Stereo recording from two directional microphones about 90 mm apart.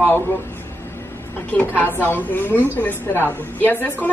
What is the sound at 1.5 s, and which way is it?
A woman's voice, 20° left (ahead or behind).